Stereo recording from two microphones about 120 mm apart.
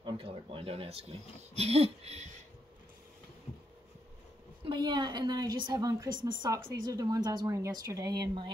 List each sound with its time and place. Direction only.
0.0 s speech: 45° right (ahead or behind); by 2.4 s 70° right (ahead or behind)
4.6 s a woman's voice: 40° right (ahead or behind)